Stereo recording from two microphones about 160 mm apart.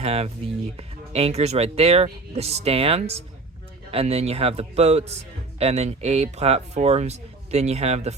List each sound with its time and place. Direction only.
0.0 s speech: 40° right (ahead or behind)